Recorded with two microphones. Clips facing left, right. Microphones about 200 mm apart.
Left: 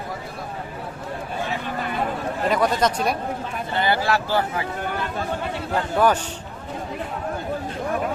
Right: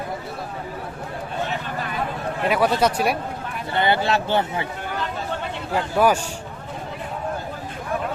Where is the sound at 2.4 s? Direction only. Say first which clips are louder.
Right 1 dB; 5° right (ahead or behind).